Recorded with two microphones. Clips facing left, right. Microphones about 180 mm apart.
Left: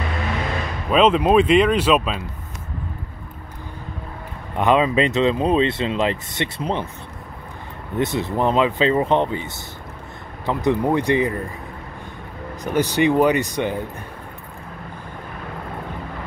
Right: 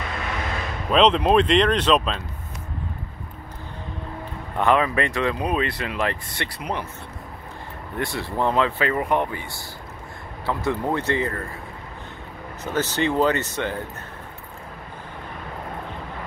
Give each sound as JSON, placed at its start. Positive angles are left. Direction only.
{"t": 0.8, "sound": "speech", "side_deg": 5}
{"t": 4.6, "sound": "speech", "side_deg": 20}
{"t": 8.0, "sound": "speech", "side_deg": 20}
{"t": 12.6, "sound": "speech", "side_deg": 15}